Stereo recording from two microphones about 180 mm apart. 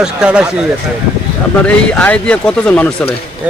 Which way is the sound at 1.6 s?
5° left (ahead or behind).